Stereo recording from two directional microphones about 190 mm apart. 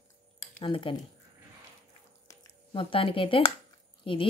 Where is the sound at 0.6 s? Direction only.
25° left (ahead or behind).